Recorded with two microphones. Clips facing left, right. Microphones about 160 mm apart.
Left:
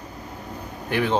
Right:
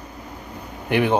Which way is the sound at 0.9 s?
15° right (ahead or behind).